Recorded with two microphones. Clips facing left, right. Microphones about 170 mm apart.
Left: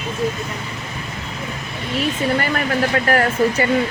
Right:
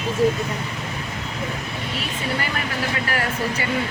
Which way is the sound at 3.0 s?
50° left (ahead or behind).